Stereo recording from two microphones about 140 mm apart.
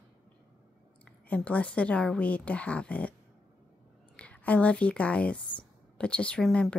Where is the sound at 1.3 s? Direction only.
10° left (ahead or behind).